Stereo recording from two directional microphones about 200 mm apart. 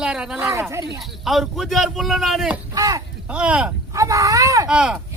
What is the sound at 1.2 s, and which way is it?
A man's voice, centre (ahead or behind).